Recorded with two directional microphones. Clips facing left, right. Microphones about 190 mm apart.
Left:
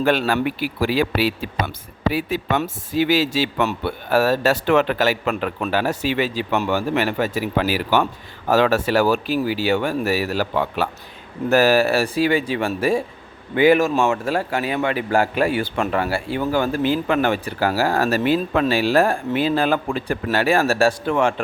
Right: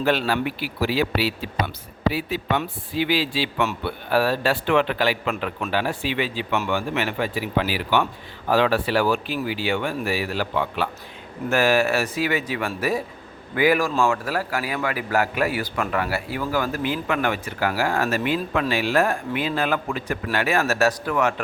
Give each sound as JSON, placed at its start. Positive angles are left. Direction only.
{"t": 0.0, "sound": "a man's voice", "side_deg": 50}